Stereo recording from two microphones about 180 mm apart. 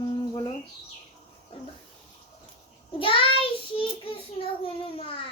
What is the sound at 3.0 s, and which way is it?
Child singing, 30° left (ahead or behind).